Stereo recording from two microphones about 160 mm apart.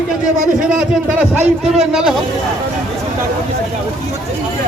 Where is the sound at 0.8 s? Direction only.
5° right (ahead or behind).